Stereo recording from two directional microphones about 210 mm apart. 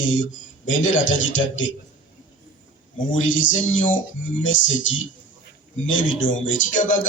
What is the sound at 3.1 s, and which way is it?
Speech, 65° left (ahead or behind).